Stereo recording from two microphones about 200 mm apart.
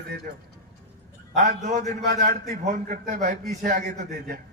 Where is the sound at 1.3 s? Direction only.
35° right (ahead or behind).